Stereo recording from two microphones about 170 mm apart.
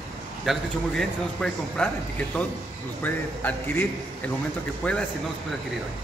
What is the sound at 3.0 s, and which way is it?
A man's voice, 10° left (ahead or behind).